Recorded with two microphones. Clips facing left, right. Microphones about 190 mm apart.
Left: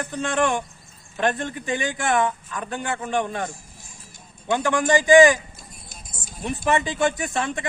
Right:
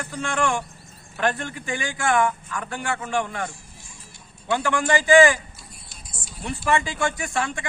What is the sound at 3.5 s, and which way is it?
Vehicle, 45° left (ahead or behind).